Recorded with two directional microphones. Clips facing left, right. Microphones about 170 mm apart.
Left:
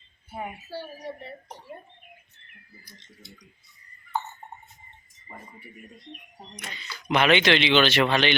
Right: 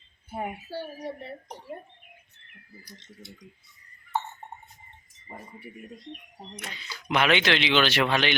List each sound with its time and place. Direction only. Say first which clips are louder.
5.3 s speech: right 2 dB; 30° right (ahead or behind)
6.6 s speech: left 2 dB; 5° right (ahead or behind)